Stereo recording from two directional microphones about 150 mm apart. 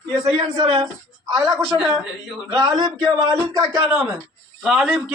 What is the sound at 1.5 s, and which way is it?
Speech, 5° right (ahead or behind).